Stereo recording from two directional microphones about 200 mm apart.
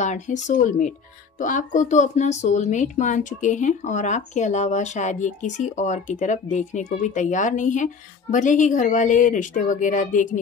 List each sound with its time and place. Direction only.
0.0 s speech: 35° left (ahead or behind)